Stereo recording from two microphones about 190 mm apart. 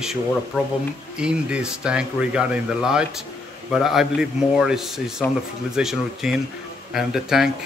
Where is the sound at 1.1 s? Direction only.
5° right (ahead or behind).